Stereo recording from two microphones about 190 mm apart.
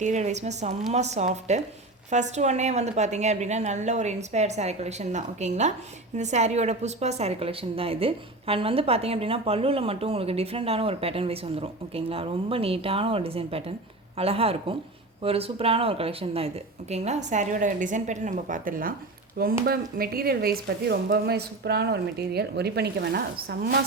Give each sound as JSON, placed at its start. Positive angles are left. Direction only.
{"t": 0.0, "sound": "a woman's voice", "side_deg": -40}